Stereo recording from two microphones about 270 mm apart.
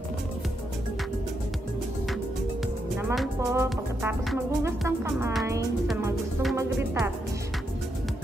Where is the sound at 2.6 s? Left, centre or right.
Centre.